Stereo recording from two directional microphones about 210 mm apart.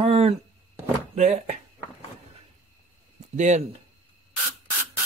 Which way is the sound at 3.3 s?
35° right (ahead or behind).